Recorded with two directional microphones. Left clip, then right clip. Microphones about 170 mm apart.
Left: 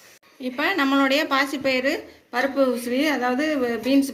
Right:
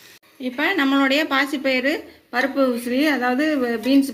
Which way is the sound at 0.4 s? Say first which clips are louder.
Right 2 dB; 15° right (ahead or behind).